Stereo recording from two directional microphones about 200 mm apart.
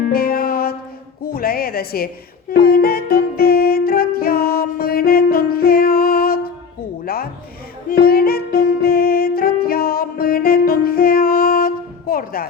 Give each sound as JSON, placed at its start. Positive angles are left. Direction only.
{"t": 0.1, "sound": "music", "side_deg": 50}
{"t": 1.2, "sound": "speech", "side_deg": 50}
{"t": 2.5, "sound": "music", "side_deg": 50}
{"t": 7.0, "sound": "a sound", "side_deg": 50}
{"t": 7.9, "sound": "music", "side_deg": 50}